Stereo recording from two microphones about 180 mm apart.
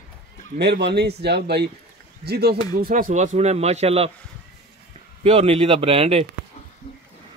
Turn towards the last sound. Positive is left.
turn(degrees=-30)  # may be behind; listen again after turning